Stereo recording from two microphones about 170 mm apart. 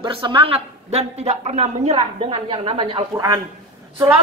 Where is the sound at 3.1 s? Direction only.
20° right (ahead or behind).